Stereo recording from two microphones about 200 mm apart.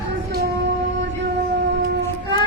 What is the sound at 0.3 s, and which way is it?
Music, 55° right (ahead or behind).